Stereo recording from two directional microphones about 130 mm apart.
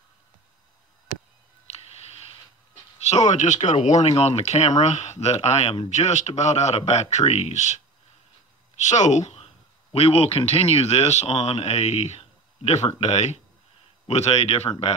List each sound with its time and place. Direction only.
1.7 s a sound: 50° left (ahead or behind)
3.0 s speech: 55° left (ahead or behind); by 3.7 s 70° left (ahead or behind)
3.7 s speech: 60° left (ahead or behind)
8.8 s speech: 65° left (ahead or behind)